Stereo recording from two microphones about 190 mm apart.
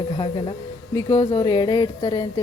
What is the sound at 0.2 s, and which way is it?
A woman's voice, 25° left (ahead or behind).